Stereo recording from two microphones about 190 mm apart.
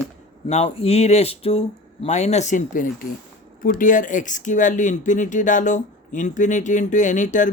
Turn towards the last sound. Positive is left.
turn(degrees=40)  # may be behind; listen again after turning